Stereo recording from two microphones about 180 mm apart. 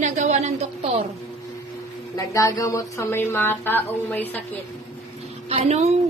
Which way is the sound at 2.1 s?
20° left (ahead or behind).